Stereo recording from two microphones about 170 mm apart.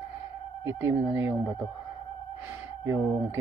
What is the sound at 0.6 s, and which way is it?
Speech, 10° right (ahead or behind).